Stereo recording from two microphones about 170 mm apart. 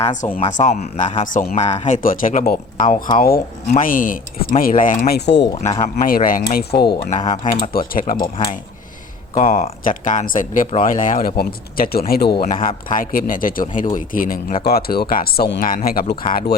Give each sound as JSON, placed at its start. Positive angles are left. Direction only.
{"t": 0.0, "sound": "speech", "side_deg": 45}
{"t": 2.0, "sound": "speech", "side_deg": 55}
{"t": 5.6, "sound": "speech", "side_deg": 45}
{"t": 7.7, "sound": "speech", "side_deg": 55}
{"t": 9.3, "sound": "speech", "side_deg": 50}
{"t": 12.6, "sound": "speech", "side_deg": 55}